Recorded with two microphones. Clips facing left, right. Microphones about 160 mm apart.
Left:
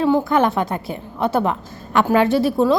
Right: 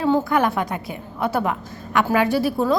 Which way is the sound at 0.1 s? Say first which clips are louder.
Left 2 dB; 15° left (ahead or behind).